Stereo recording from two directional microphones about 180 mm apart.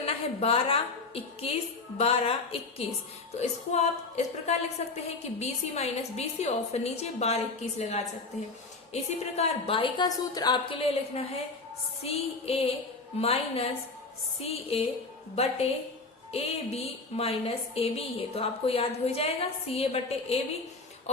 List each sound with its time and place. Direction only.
0.0 s a woman's voice: 35° left (ahead or behind)
16.3 s a woman's voice: 35° left (ahead or behind)